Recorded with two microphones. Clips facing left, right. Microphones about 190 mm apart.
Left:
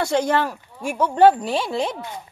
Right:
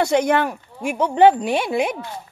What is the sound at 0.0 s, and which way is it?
Speech, 15° right (ahead or behind).